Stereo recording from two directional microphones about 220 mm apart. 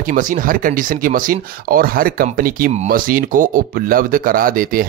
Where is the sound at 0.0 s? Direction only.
40° right (ahead or behind).